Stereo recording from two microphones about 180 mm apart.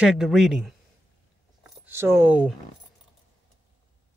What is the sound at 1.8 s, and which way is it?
Speech, 15° right (ahead or behind).